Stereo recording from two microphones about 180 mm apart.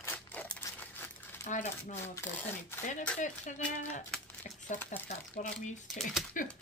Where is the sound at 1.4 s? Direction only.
40° left (ahead or behind).